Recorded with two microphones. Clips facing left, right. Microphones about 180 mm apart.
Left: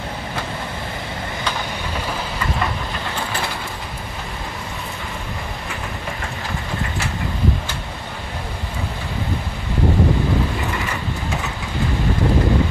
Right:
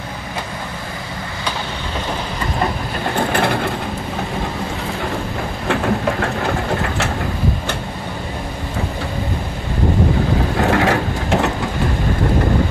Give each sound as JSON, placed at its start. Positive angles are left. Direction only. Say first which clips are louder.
{"t": 3.2, "sound": "ratchet", "louder": "right 12 dB", "side_deg": -60}
{"t": 5.7, "sound": "train", "louder": "right 16 dB", "side_deg": -70}
{"t": 10.6, "sound": "crushing", "louder": "right 10 dB", "side_deg": -90}